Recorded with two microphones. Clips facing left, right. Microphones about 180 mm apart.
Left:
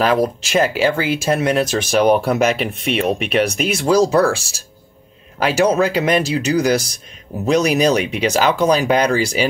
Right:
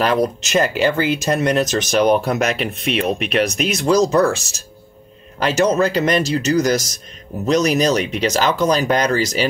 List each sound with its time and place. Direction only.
0.0 s speech: 5° left (ahead or behind)
5.4 s speech: 10° left (ahead or behind)